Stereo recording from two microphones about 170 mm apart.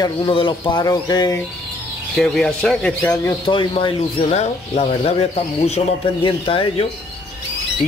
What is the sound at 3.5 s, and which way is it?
Speech, 30° left (ahead or behind).